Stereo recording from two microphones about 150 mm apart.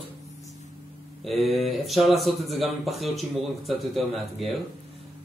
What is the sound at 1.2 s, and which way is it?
Speech, centre (ahead or behind).